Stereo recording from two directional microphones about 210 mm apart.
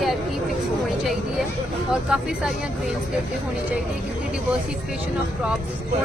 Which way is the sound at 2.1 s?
5° right (ahead or behind).